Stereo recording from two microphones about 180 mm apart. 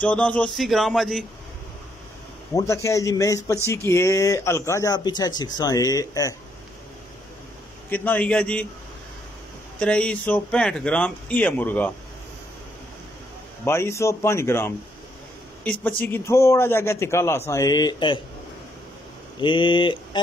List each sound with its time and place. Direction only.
0.0 s a sound: 5° left (ahead or behind)
2.5 s speech: 15° left (ahead or behind)
7.9 s speech: 10° left (ahead or behind)
9.8 s speech: 5° left (ahead or behind)
13.7 s speech: 15° left (ahead or behind)
19.4 s speech: 25° left (ahead or behind)